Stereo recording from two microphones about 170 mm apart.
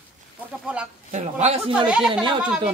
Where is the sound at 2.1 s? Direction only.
30° right (ahead or behind).